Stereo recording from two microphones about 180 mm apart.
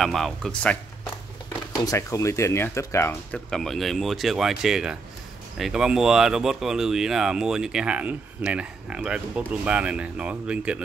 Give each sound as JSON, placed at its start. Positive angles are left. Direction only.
{"t": 0.0, "sound": "speech", "side_deg": 0}
{"t": 1.8, "sound": "speech", "side_deg": 20}